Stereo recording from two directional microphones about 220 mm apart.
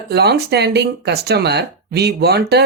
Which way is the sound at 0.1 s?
45° right (ahead or behind).